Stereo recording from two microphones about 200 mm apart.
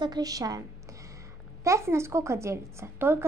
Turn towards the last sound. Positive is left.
turn(degrees=-10)  # may be behind; listen again after turning